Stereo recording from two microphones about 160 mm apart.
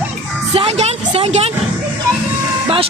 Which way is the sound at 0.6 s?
40° right (ahead or behind).